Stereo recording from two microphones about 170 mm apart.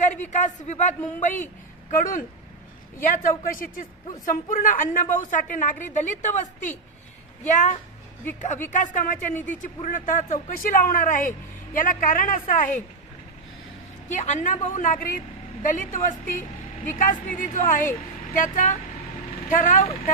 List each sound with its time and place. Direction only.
0.3 s a woman's voice: 45° left (ahead or behind)
3.0 s a woman's voice: 50° left (ahead or behind)
8.7 s a woman's voice: 50° left (ahead or behind)
14.0 s a woman's voice: 45° left (ahead or behind)